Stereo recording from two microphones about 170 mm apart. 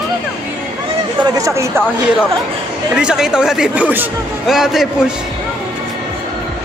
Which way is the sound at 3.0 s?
5° right (ahead or behind).